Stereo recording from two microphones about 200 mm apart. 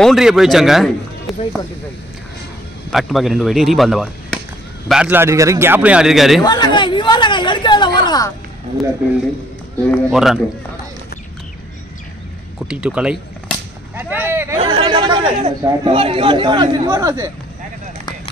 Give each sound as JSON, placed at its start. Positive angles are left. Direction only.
{"t": 0.0, "sound": "speech", "side_deg": 0}
{"t": 2.9, "sound": "a man's voice", "side_deg": 0}
{"t": 6.4, "sound": "a sound", "side_deg": 20}
{"t": 9.8, "sound": "speech", "side_deg": 0}
{"t": 12.6, "sound": "speech", "side_deg": -5}
{"t": 13.9, "sound": "a sound", "side_deg": -10}
{"t": 14.6, "sound": "speech", "side_deg": -25}